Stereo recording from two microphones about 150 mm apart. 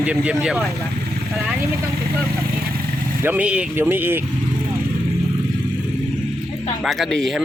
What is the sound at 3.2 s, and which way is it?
Speech, 10° right (ahead or behind).